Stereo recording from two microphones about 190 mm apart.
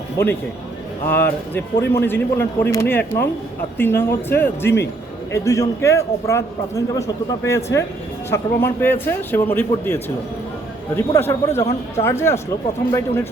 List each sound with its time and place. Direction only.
1.0 s a man's voice: 10° left (ahead or behind)